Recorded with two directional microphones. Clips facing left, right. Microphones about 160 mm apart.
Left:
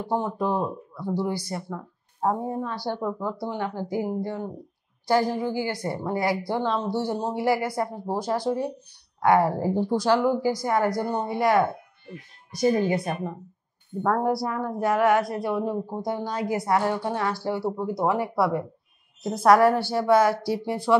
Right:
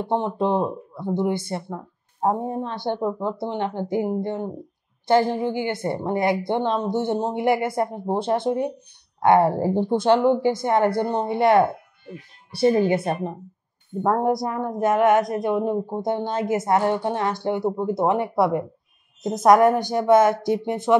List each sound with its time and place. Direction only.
0.0 s a woman's voice: 25° right (ahead or behind)